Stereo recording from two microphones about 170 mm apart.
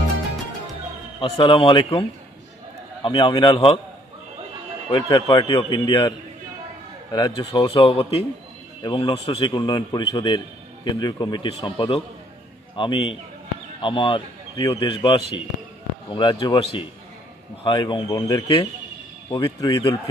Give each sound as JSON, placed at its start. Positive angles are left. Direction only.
{"t": 1.4, "sound": "a man's voice", "side_deg": 30}
{"t": 4.9, "sound": "a man's voice", "side_deg": 30}